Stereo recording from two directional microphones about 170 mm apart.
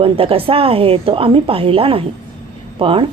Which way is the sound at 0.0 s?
35° right (ahead or behind).